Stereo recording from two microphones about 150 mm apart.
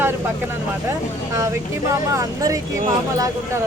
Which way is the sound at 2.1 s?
20° right (ahead or behind).